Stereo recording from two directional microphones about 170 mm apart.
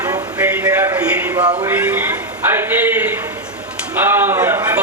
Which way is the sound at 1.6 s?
10° right (ahead or behind).